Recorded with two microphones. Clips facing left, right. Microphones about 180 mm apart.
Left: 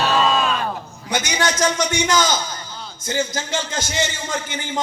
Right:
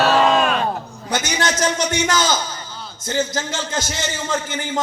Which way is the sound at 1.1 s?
10° left (ahead or behind).